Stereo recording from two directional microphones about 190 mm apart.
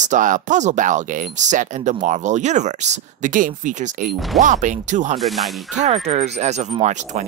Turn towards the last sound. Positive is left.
turn(degrees=-40)  # may be behind; listen again after turning